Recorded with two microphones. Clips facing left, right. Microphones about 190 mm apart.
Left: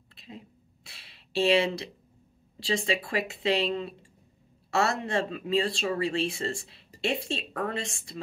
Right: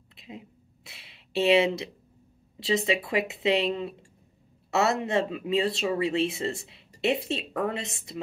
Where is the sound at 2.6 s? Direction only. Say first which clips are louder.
Right 3 dB; 20° right (ahead or behind).